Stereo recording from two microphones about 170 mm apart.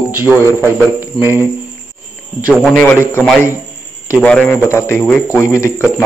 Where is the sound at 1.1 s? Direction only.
30° left (ahead or behind).